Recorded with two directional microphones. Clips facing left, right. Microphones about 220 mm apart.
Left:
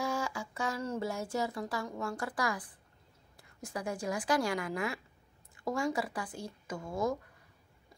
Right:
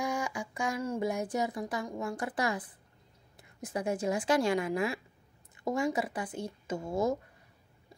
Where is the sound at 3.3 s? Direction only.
20° right (ahead or behind).